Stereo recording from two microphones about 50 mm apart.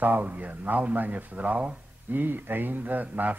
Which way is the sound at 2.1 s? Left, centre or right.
Right.